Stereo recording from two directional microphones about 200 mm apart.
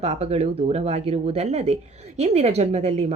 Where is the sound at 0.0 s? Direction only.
30° right (ahead or behind).